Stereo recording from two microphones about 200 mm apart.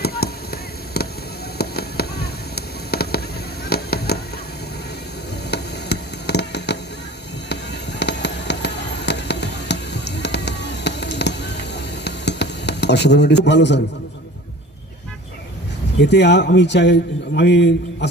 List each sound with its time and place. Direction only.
0.0 s fireworks: 50° left (ahead or behind)
5.5 s a sound: 55° left (ahead or behind)
7.5 s fireworks: 60° left (ahead or behind)
16.0 s speech: 60° left (ahead or behind)